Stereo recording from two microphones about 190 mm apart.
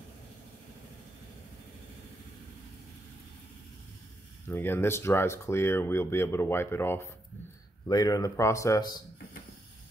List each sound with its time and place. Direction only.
4.5 s a man's voice: 10° left (ahead or behind)